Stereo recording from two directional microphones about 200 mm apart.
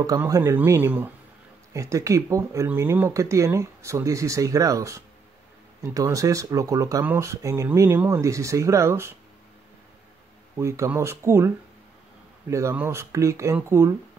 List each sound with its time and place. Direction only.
0.0 s speech: 20° right (ahead or behind)
10.6 s speech: 15° right (ahead or behind)